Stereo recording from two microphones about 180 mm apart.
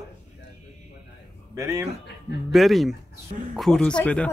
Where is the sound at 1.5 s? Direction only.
15° right (ahead or behind).